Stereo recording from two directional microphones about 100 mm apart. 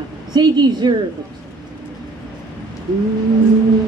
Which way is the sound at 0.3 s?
45° right (ahead or behind).